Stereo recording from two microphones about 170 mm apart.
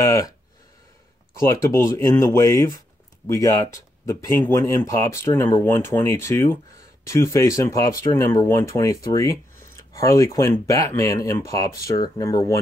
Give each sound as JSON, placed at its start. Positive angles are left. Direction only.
{"t": 0.0, "sound": "speech", "side_deg": 20}
{"t": 1.7, "sound": "speech", "side_deg": 15}